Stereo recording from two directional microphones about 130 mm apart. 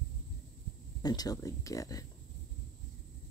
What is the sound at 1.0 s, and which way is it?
Speech, 30° left (ahead or behind).